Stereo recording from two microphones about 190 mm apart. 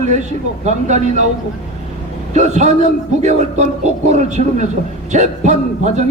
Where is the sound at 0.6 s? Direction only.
35° right (ahead or behind).